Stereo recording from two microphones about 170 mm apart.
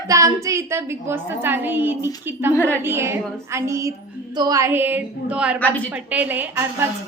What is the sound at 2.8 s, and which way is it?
A woman's voice, 15° right (ahead or behind).